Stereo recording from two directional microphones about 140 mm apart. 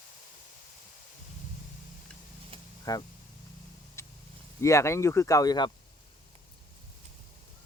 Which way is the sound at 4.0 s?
20° left (ahead or behind).